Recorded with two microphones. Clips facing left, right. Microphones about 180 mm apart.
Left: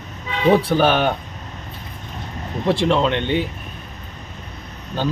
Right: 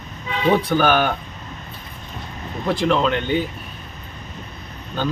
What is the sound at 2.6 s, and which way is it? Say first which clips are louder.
Speech: left 1 dB; 30° left (ahead or behind).